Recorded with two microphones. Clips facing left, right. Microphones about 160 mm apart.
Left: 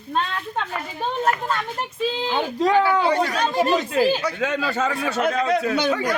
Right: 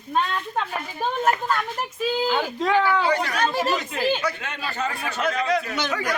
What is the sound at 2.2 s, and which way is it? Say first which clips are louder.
Speech: right 1 dB; 25° left (ahead or behind).